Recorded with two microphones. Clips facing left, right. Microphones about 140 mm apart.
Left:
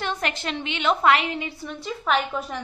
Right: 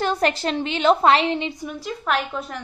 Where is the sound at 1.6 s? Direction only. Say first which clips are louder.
Right 1 dB; centre (ahead or behind).